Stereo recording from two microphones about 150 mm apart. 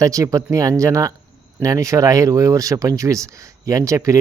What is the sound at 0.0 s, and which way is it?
Speech, 20° right (ahead or behind).